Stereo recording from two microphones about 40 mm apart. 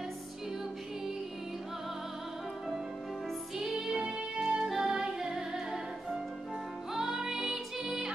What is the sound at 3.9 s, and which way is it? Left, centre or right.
Music, right.